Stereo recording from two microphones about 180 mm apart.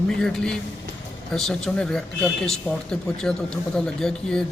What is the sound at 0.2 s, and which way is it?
Speech, 5° left (ahead or behind).